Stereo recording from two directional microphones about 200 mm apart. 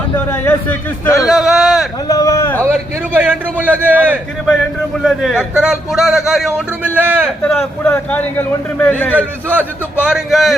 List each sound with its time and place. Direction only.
0.3 s a man's voice: 10° left (ahead or behind)
1.3 s a man's voice: centre (ahead or behind)
2.0 s speech: 15° left (ahead or behind)
3.2 s a man's voice: 10° right (ahead or behind)
7.4 s a man's voice: 5° left (ahead or behind)
9.6 s a man's voice: 5° right (ahead or behind)